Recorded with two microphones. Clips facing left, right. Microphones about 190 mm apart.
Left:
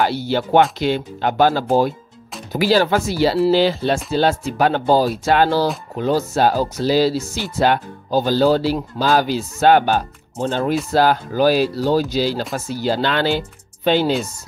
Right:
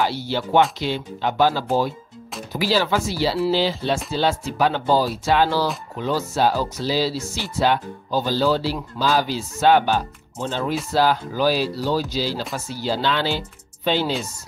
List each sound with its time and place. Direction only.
0.0 s speech: 55° left (ahead or behind)